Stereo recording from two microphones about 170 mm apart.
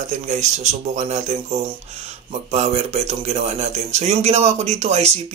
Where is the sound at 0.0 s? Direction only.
45° right (ahead or behind).